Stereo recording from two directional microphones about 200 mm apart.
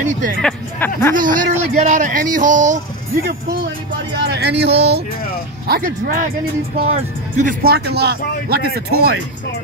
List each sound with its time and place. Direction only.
0.0 s speech: 40° right (ahead or behind)
0.4 s speech: 5° left (ahead or behind)
1.1 s speech: 40° right (ahead or behind)
4.1 s speech: 55° right (ahead or behind)
6.8 s speech: 35° right (ahead or behind); by 8.8 s 50° right (ahead or behind)